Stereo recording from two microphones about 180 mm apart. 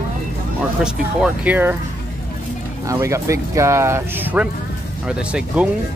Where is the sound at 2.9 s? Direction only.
15° right (ahead or behind).